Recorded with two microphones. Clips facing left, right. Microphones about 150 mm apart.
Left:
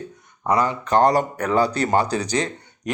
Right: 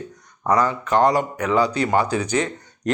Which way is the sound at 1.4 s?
55° left (ahead or behind).